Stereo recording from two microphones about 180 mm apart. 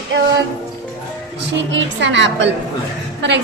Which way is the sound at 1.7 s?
90° right.